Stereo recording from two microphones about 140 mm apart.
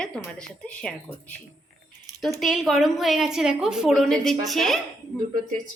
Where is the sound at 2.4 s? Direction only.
Centre (ahead or behind).